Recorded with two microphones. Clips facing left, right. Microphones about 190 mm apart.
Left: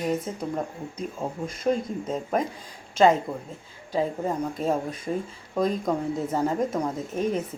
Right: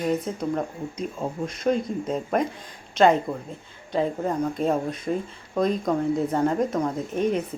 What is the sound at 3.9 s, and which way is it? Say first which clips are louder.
Speech: right 2 dB; 5° left (ahead or behind).